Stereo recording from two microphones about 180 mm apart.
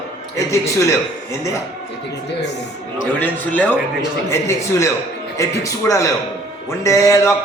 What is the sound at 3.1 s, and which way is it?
A man's voice, 10° left (ahead or behind).